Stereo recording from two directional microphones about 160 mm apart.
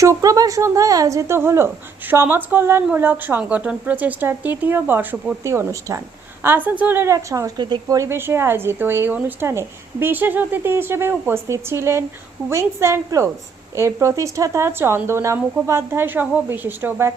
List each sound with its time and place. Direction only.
0.0 s a woman's voice: 20° right (ahead or behind)